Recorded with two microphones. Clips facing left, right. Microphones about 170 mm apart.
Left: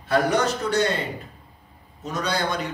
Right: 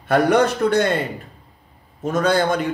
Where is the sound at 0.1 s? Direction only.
60° right (ahead or behind).